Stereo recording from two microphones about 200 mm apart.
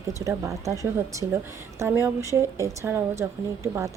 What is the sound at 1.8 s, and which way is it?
Speech, 15° right (ahead or behind).